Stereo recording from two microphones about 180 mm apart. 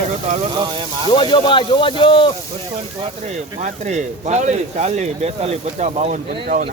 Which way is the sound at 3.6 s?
40° right (ahead or behind).